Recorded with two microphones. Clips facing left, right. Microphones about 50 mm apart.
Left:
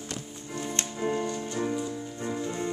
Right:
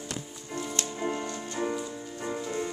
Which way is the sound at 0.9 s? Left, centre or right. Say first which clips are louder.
Left 5 dB; centre.